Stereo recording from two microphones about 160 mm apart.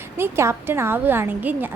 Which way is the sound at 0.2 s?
15° right (ahead or behind).